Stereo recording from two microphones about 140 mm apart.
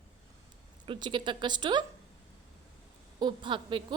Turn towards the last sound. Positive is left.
turn(degrees=-35)  # may be behind; listen again after turning